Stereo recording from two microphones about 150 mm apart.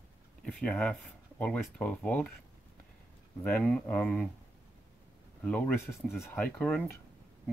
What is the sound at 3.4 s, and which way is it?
Speech, 5° left (ahead or behind).